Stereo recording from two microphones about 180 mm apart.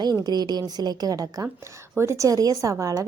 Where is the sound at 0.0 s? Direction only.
20° right (ahead or behind).